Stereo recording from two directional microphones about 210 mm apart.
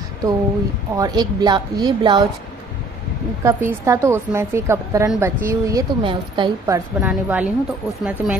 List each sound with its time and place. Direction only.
0.9 s a woman's voice: 20° right (ahead or behind)
3.4 s a woman's voice: 15° right (ahead or behind)
7.0 s a woman's voice: 5° right (ahead or behind)